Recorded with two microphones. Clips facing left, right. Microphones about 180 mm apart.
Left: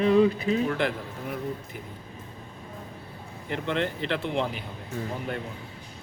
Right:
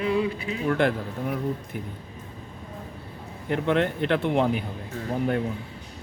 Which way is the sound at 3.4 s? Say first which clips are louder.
Right 5 dB; 50° right (ahead or behind).